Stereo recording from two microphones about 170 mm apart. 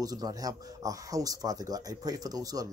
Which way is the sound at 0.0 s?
20° right (ahead or behind).